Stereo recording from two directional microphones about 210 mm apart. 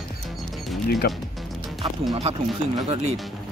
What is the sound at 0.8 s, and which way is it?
Speech, 50° left (ahead or behind).